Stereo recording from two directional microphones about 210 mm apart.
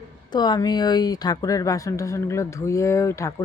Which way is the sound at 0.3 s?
20° left (ahead or behind).